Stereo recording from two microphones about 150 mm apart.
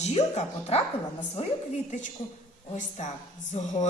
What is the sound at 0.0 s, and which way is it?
Speech, 50° left (ahead or behind).